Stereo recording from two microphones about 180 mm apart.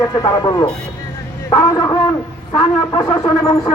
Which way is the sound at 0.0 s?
20° left (ahead or behind).